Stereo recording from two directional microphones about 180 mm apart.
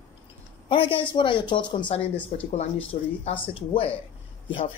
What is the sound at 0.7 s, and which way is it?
Speech, 30° left (ahead or behind).